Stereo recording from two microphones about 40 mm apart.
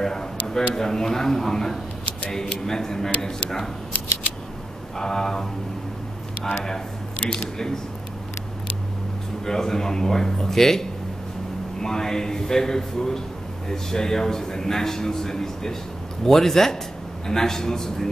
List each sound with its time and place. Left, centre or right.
0.0 s a sound: centre
0.7 s a man's voice: centre
4.9 s a man's voice: centre
9.5 s a man's voice: centre